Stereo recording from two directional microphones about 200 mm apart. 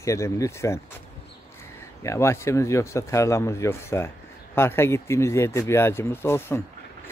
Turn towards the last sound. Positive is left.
turn(degrees=10)  # may be behind; listen again after turning